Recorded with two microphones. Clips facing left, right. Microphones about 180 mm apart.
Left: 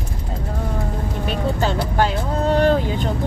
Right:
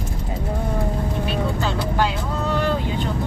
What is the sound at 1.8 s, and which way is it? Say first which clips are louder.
Vehicle: left 2 dB; 45° left (ahead or behind).